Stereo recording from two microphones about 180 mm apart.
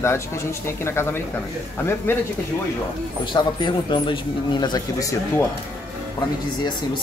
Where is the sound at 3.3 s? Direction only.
25° left (ahead or behind).